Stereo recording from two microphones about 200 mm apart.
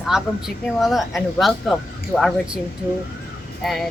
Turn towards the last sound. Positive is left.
turn(degrees=0)  # may be behind; listen again after turning